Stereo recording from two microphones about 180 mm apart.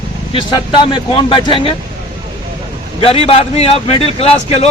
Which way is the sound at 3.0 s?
35° left (ahead or behind).